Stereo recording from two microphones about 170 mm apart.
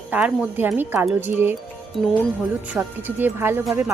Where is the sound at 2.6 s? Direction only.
10° right (ahead or behind).